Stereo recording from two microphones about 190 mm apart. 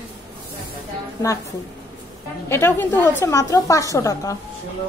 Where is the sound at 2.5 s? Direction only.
10° left (ahead or behind).